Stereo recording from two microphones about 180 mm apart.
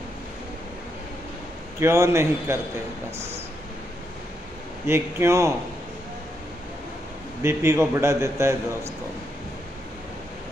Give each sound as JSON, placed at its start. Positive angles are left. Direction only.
{"t": 1.8, "sound": "a man's voice", "side_deg": -15}
{"t": 4.8, "sound": "a man's voice", "side_deg": -15}
{"t": 7.4, "sound": "a man's voice", "side_deg": -15}